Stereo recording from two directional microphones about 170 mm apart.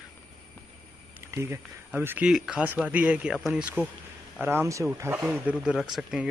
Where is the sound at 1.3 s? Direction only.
15° right (ahead or behind); by 3.6 s centre (ahead or behind).